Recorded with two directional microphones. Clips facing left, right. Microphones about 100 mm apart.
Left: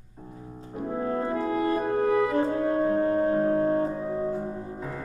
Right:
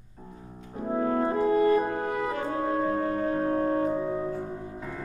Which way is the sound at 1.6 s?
35° left (ahead or behind).